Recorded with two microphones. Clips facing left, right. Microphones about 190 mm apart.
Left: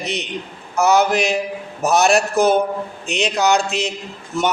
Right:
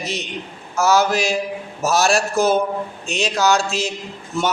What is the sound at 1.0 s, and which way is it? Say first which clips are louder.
Speech: left 2 dB; 20° left (ahead or behind).